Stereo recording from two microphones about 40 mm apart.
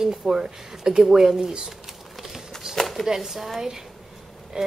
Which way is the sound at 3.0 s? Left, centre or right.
Centre.